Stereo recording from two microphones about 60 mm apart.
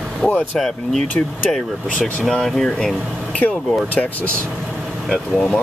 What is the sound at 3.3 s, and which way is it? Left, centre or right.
Speech, left.